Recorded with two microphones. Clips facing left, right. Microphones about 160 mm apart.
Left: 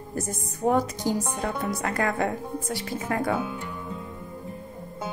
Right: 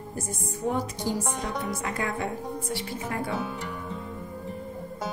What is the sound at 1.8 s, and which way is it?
Speech, 65° left (ahead or behind).